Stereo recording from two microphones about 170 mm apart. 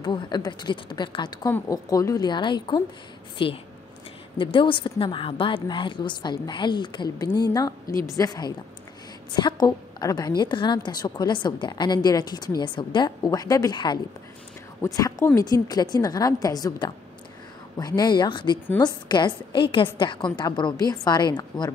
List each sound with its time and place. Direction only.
0.0 s a woman's voice: 25° left (ahead or behind)
15.0 s a woman's voice: 20° left (ahead or behind)